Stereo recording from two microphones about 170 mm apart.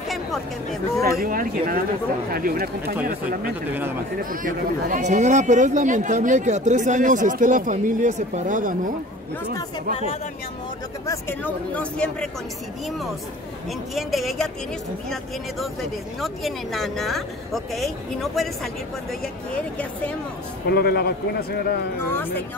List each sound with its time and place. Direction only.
0.1 s speech: centre (ahead or behind)
1.2 s speech: 55° right (ahead or behind)
11.1 s speech: 10° left (ahead or behind)
13.9 s speech: centre (ahead or behind)
15.6 s speech: centre (ahead or behind)
20.6 s a man's voice: 70° left (ahead or behind)